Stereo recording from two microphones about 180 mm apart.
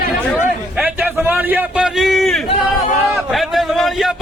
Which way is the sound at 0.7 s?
10° right (ahead or behind).